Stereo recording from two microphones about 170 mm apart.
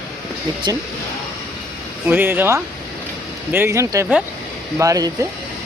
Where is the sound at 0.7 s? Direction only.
20° right (ahead or behind).